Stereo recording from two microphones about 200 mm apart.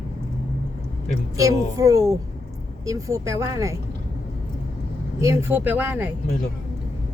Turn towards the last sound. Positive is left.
turn(degrees=-10)  # may be behind; listen again after turning